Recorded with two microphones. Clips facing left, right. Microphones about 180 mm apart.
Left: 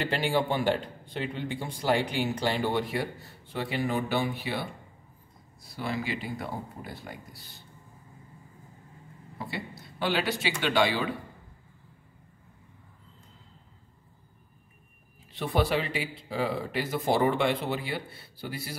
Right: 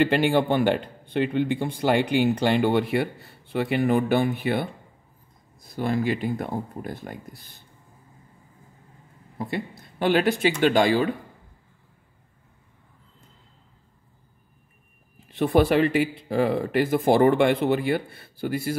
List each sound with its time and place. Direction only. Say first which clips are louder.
0.0 s speech: right 7 dB; 60° right (ahead or behind)
9.4 s speech: right 7 dB; 50° right (ahead or behind)
15.3 s speech: right 8 dB; 50° right (ahead or behind)